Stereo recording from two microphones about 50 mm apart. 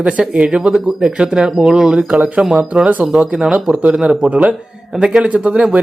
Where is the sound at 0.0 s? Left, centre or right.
Right.